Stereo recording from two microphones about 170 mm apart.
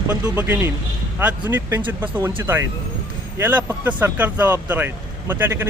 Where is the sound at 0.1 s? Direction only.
10° right (ahead or behind).